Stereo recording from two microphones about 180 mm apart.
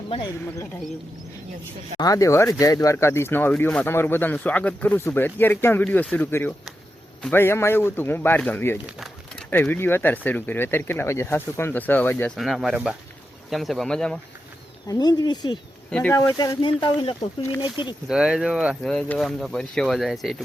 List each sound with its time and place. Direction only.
2.0 s speech: 20° left (ahead or behind)
12.4 s speech: centre (ahead or behind)
14.8 s speech: 20° left (ahead or behind)
15.9 s speech: 5° left (ahead or behind)
16.1 s speech: 15° left (ahead or behind)
18.1 s speech: 5° right (ahead or behind)